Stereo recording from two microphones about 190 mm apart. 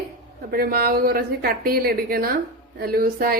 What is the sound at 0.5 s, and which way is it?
A woman's voice, 50° right (ahead or behind).